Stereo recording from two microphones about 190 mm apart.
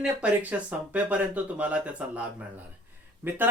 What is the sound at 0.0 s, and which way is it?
Speech, 5° right (ahead or behind).